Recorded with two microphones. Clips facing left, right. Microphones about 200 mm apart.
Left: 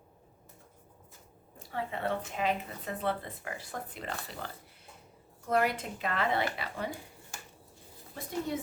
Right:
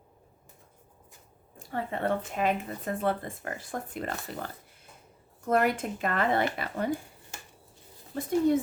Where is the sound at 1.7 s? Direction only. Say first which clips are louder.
Right 4 dB; 50° right (ahead or behind).